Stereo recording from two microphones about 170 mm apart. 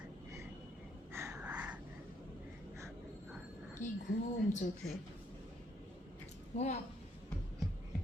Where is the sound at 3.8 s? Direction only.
45° left (ahead or behind).